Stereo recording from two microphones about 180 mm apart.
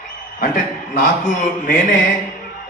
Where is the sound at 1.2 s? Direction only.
45° left (ahead or behind).